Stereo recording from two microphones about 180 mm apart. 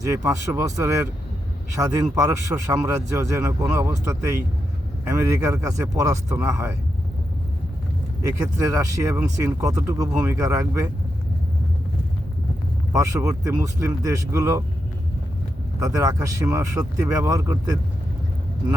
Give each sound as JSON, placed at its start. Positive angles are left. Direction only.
{"t": 0.0, "sound": "speech", "side_deg": -15}
{"t": 8.2, "sound": "speech", "side_deg": -20}
{"t": 12.9, "sound": "speech", "side_deg": -15}
{"t": 15.8, "sound": "speech", "side_deg": -15}